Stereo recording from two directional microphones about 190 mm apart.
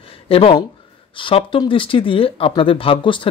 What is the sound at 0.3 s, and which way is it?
Speech, 30° left (ahead or behind).